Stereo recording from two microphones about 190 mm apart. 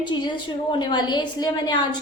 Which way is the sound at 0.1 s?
25° left (ahead or behind).